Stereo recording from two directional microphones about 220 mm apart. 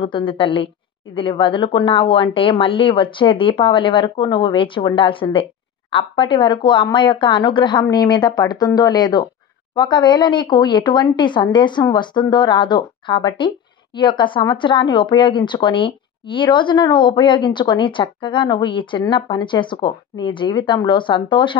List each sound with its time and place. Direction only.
0.0 s speech: 20° left (ahead or behind)